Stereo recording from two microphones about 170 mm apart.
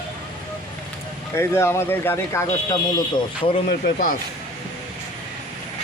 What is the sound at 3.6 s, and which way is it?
Speech, 60° left (ahead or behind).